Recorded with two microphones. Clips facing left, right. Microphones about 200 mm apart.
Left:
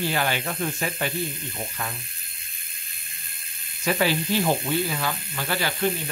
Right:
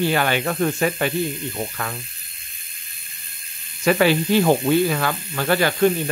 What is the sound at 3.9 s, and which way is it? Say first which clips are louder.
Speech: right 6 dB; 65° right (ahead or behind).